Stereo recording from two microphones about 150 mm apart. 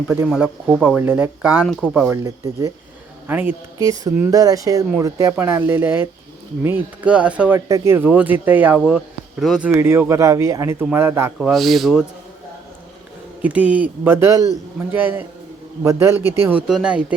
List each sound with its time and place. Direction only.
0.3 s speech: 10° right (ahead or behind)
1.6 s speech: 5° left (ahead or behind)
2.2 s speech: 25° right (ahead or behind)
3.2 s speech: 10° right (ahead or behind)
3.8 s speech: 25° right (ahead or behind)
9.4 s speech: centre (ahead or behind)
9.6 s speech: 15° right (ahead or behind)
11.3 s speech: centre (ahead or behind)
13.4 s speech: 10° right (ahead or behind)